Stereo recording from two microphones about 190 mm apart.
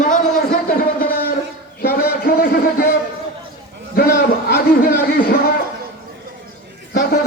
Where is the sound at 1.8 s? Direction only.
50° left (ahead or behind).